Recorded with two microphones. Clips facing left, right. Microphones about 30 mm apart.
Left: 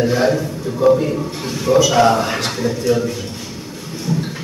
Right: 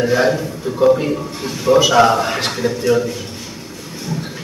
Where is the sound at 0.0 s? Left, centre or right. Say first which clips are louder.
Right 1 dB; centre.